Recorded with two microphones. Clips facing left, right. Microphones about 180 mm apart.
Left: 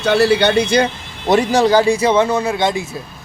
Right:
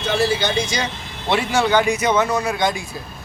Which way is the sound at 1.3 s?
40° left (ahead or behind).